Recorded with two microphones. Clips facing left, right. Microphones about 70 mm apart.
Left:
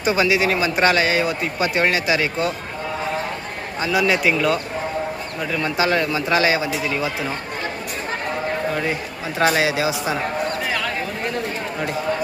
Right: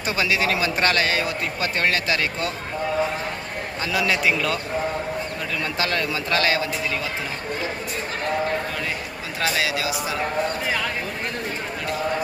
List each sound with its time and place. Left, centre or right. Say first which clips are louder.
0.0 s a man's voice: left 5 dB; centre
3.8 s a man's voice: left 4 dB; centre
5.6 s speech: left 6 dB; centre
9.6 s speech: left 4 dB; left